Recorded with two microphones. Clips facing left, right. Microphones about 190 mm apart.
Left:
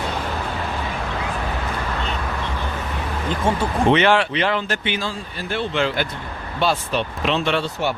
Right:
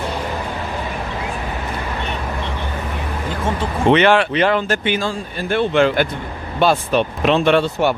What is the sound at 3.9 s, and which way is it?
Speech, 55° right (ahead or behind).